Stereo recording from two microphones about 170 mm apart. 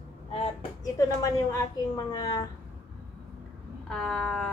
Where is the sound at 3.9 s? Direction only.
5° left (ahead or behind).